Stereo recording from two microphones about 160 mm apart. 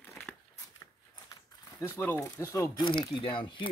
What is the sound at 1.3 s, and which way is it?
Speech, 20° left (ahead or behind).